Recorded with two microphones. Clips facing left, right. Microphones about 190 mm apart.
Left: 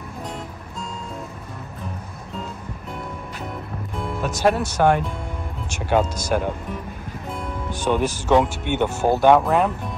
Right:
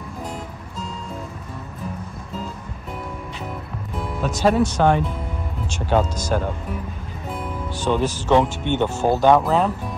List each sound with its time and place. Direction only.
4.2 s speech: 5° left (ahead or behind)
7.2 s music: centre (ahead or behind)
7.7 s speech: 15° left (ahead or behind)
9.4 s speech: centre (ahead or behind)